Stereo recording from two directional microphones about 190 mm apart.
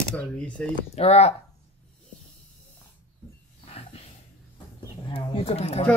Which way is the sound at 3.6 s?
30° left (ahead or behind).